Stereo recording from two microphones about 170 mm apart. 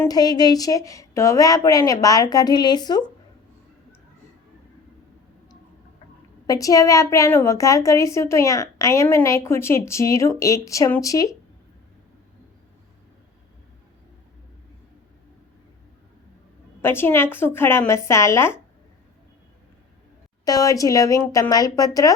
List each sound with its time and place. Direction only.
0.0 s a woman's voice: 20° left (ahead or behind)
6.5 s a woman's voice: 20° left (ahead or behind)
16.8 s a woman's voice: 15° left (ahead or behind)
20.4 s a woman's voice: 20° left (ahead or behind)